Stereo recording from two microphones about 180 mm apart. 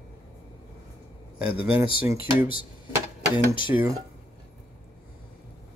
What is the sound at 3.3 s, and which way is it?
Speech, 25° left (ahead or behind).